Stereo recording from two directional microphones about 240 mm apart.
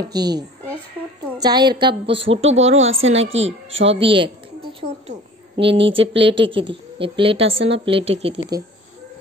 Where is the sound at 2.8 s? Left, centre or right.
Right.